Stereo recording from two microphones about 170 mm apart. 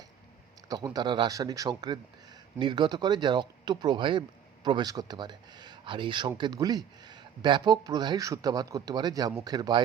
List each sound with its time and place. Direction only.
0.7 s speech: 20° right (ahead or behind)